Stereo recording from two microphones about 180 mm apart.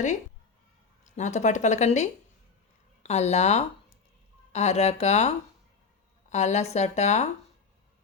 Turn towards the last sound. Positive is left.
turn(degrees=40)  # may be behind; listen again after turning